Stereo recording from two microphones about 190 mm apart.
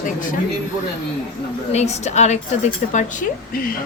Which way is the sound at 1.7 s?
35° left (ahead or behind).